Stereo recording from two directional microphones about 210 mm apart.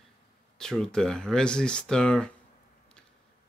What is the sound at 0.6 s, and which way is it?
Speech, centre (ahead or behind).